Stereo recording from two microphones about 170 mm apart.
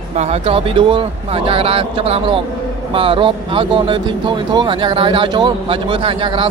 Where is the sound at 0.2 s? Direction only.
35° right (ahead or behind).